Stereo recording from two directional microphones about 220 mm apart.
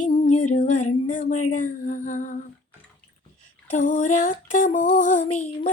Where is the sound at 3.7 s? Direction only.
35° left (ahead or behind).